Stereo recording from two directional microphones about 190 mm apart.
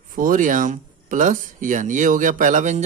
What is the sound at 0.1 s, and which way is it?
Speech, 45° right (ahead or behind).